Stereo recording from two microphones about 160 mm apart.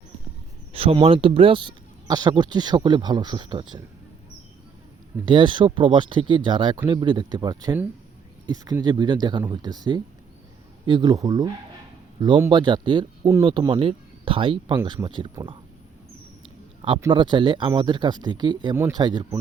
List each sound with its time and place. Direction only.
0.7 s speech: 35° right (ahead or behind)
5.2 s speech: 30° right (ahead or behind)
17.1 s speech: 30° right (ahead or behind)